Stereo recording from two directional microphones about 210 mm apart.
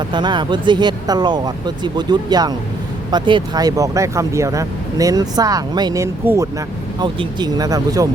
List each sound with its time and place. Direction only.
0.1 s speech: 20° right (ahead or behind)